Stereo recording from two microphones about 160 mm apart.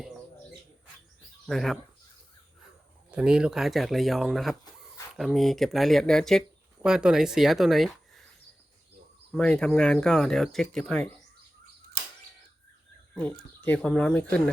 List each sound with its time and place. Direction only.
1.5 s speech: centre (ahead or behind)
3.1 s speech: 5° right (ahead or behind)
9.3 s speech: 5° left (ahead or behind)
13.1 s speech: 10° left (ahead or behind)